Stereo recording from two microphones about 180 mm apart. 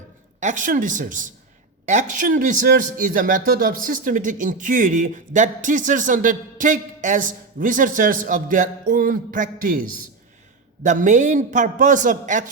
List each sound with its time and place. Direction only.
0.3 s a man's voice: 45° right (ahead or behind)
10.8 s a man's voice: 45° right (ahead or behind)